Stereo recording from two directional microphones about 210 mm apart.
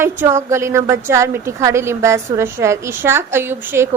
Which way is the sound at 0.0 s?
10° right (ahead or behind).